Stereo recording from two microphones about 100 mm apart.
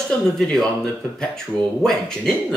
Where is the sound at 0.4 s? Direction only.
5° left (ahead or behind).